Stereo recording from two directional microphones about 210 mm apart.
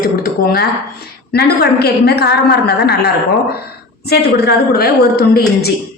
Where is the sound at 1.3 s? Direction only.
50° left (ahead or behind).